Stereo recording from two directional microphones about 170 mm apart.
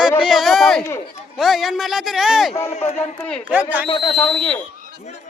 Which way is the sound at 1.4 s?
Centre (ahead or behind).